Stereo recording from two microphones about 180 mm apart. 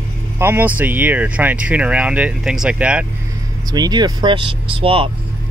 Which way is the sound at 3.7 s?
20° right (ahead or behind).